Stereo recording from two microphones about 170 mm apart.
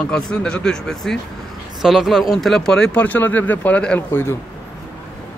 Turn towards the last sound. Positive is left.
turn(degrees=15)  # may be behind; listen again after turning